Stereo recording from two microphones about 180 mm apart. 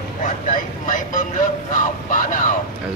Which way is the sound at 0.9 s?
45° left (ahead or behind).